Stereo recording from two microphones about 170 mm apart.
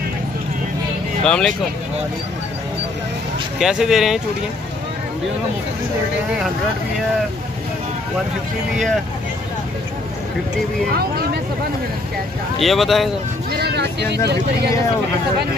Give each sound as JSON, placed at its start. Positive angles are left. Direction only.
{"t": 1.2, "sound": "speech", "side_deg": 5}
{"t": 3.5, "sound": "speech", "side_deg": -5}
{"t": 12.5, "sound": "speech", "side_deg": 0}
{"t": 13.5, "sound": "speech", "side_deg": -75}